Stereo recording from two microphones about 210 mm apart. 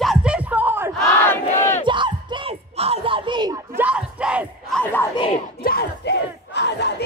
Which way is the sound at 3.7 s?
5° right (ahead or behind).